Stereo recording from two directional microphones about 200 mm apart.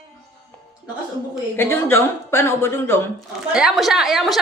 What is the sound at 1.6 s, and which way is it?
Speech, 10° left (ahead or behind).